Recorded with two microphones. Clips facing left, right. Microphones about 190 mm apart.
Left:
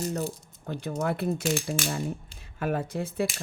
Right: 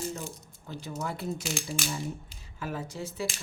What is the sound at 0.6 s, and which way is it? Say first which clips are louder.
Speech: left 6 dB; 55° left (ahead or behind).